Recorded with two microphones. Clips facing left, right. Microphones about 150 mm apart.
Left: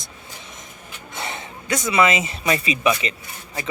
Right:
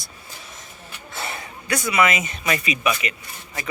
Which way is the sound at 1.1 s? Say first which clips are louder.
Left 1 dB; 20° left (ahead or behind).